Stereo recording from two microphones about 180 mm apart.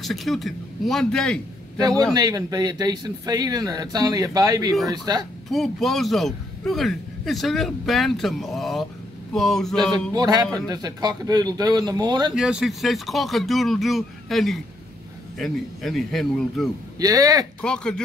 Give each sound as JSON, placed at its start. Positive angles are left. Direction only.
{"t": 0.0, "sound": "a man's voice", "side_deg": 0}
{"t": 1.8, "sound": "speech", "side_deg": -20}
{"t": 5.5, "sound": "a man's voice", "side_deg": 0}
{"t": 10.1, "sound": "speech", "side_deg": -20}
{"t": 12.4, "sound": "a man's voice", "side_deg": -5}
{"t": 17.0, "sound": "speech", "side_deg": -20}
{"t": 17.6, "sound": "a man's voice", "side_deg": 5}